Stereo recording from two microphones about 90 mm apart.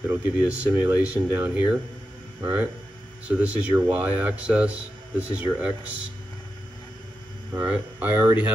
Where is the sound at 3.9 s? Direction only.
15° right (ahead or behind).